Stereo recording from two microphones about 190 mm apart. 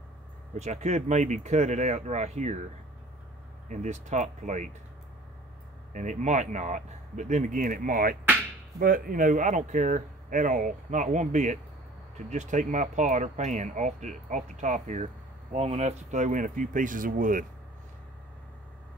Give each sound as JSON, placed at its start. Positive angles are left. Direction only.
{"t": 0.6, "sound": "speech", "side_deg": -35}
{"t": 3.6, "sound": "speech", "side_deg": -40}
{"t": 5.9, "sound": "speech", "side_deg": -40}